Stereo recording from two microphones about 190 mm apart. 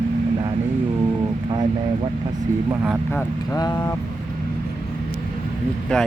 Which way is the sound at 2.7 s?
10° right (ahead or behind).